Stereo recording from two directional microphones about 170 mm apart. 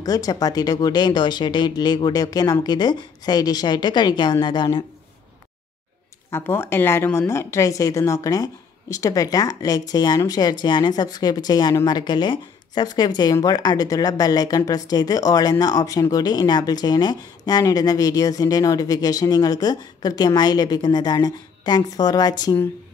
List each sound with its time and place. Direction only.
0.0 s a woman's voice: 20° left (ahead or behind)
6.3 s a woman's voice: 15° left (ahead or behind)